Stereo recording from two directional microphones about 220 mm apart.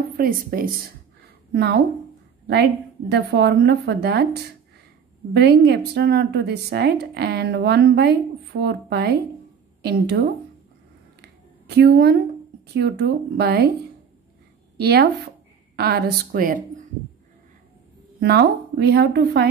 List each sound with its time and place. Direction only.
0.2 s a woman's voice: 40° right (ahead or behind)
1.5 s a woman's voice: 50° right (ahead or behind)
3.1 s a woman's voice: 50° right (ahead or behind)
5.3 s a woman's voice: 50° right (ahead or behind)
11.7 s a woman's voice: 45° right (ahead or behind)
14.8 s speech: 45° right (ahead or behind)
18.2 s a woman's voice: 50° right (ahead or behind)